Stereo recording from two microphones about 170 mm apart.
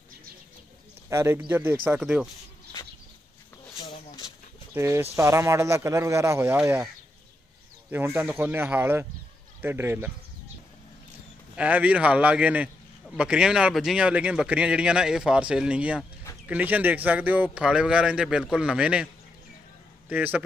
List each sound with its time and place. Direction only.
1.1 s speech: 15° right (ahead or behind)
4.7 s speech: 15° right (ahead or behind)
7.9 s speech: 10° right (ahead or behind)
11.5 s a man's voice: 10° right (ahead or behind)
20.1 s speech: 10° right (ahead or behind)